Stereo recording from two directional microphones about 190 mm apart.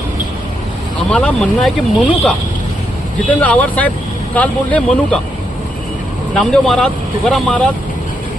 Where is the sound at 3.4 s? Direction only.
10° left (ahead or behind).